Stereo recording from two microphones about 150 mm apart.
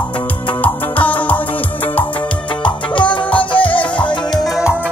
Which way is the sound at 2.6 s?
35° left (ahead or behind).